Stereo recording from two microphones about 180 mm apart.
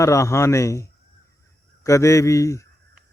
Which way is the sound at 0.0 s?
15° left (ahead or behind).